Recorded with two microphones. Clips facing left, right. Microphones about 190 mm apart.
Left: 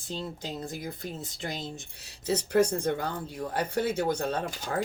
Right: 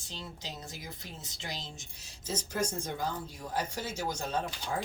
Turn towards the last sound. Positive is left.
turn(degrees=60)  # may be behind; listen again after turning